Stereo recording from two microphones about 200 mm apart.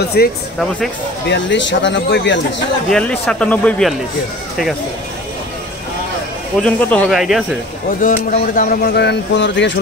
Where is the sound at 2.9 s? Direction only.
5° left (ahead or behind).